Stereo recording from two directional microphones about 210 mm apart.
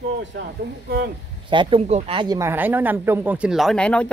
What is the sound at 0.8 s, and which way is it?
Speech, 50° right (ahead or behind).